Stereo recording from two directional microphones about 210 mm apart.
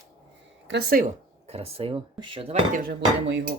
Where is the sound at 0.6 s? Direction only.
55° right (ahead or behind).